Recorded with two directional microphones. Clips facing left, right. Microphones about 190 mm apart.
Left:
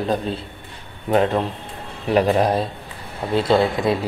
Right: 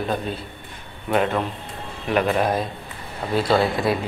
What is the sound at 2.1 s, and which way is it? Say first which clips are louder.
Speech: left 3 dB; 35° left (ahead or behind).